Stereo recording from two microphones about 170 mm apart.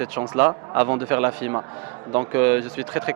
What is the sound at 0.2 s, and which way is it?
Speech, 15° right (ahead or behind).